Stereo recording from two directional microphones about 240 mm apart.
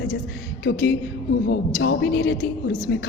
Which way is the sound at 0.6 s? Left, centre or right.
Left.